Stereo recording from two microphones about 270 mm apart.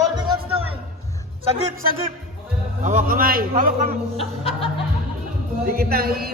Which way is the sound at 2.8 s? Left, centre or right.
Right.